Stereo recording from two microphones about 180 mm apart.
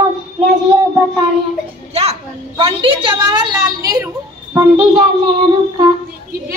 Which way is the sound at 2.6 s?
30° right (ahead or behind).